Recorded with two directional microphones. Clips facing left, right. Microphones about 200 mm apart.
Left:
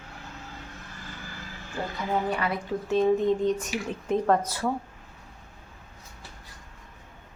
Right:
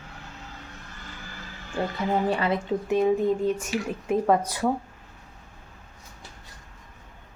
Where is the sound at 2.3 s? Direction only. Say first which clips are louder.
Right 4 dB; 25° right (ahead or behind).